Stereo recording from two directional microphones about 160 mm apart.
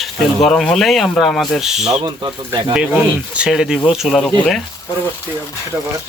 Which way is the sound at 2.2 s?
30° right (ahead or behind).